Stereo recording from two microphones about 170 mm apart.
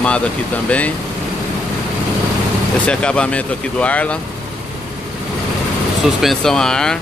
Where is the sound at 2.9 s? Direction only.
5° left (ahead or behind).